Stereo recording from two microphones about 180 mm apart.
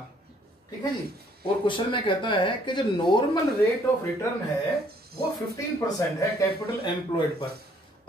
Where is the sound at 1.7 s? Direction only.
30° left (ahead or behind).